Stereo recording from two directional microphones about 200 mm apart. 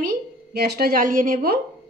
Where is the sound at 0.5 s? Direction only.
50° right (ahead or behind).